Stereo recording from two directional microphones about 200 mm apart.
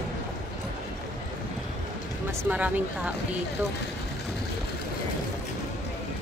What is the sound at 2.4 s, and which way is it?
Speech, 10° right (ahead or behind).